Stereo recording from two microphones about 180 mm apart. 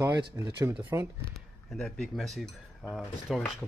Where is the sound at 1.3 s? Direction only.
Centre (ahead or behind).